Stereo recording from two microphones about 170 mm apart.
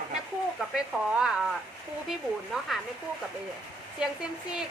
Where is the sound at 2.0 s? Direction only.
Centre (ahead or behind).